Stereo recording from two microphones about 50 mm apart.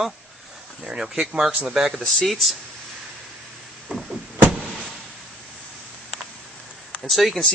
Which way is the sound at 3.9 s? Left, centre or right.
Right.